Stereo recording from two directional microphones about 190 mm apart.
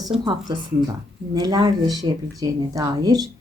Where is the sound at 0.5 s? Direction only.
25° right (ahead or behind).